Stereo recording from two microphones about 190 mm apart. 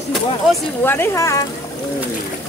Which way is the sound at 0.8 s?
10° left (ahead or behind).